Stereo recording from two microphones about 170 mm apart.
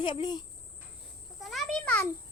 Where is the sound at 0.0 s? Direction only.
25° left (ahead or behind).